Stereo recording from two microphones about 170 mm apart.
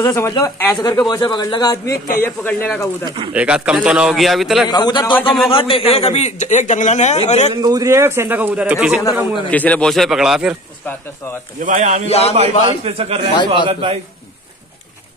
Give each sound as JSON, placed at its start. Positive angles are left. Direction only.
{"t": 0.0, "sound": "a man's voice", "side_deg": 20}
{"t": 3.3, "sound": "a man's voice", "side_deg": -5}
{"t": 4.6, "sound": "a man's voice", "side_deg": 25}
{"t": 7.6, "sound": "a man's voice", "side_deg": -20}
{"t": 9.5, "sound": "a man's voice", "side_deg": 10}
{"t": 11.6, "sound": "speech", "side_deg": -50}
{"t": 12.1, "sound": "a man's voice", "side_deg": 40}
{"t": 12.4, "sound": "a man's voice", "side_deg": -35}